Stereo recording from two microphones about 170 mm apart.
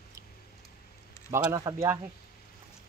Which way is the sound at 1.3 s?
20° right (ahead or behind).